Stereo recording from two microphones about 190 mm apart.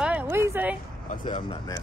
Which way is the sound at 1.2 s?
25° left (ahead or behind).